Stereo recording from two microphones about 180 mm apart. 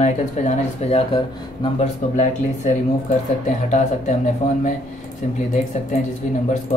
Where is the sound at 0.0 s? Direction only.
40° left (ahead or behind).